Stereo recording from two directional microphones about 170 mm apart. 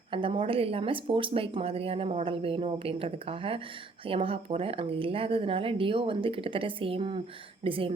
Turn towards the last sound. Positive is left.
turn(degrees=-30)  # may be behind; listen again after turning